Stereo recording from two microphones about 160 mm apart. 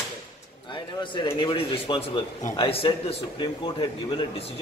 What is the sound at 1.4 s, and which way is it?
A man's voice, 30° left (ahead or behind).